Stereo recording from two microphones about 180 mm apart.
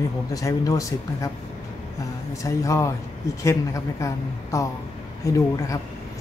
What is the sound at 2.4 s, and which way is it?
Speech, 15° left (ahead or behind).